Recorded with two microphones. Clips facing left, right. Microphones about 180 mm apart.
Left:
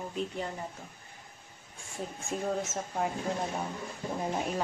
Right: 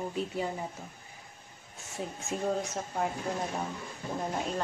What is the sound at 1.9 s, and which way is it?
Speech, centre (ahead or behind).